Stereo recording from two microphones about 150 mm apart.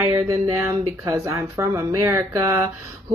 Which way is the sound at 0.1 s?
20° right (ahead or behind).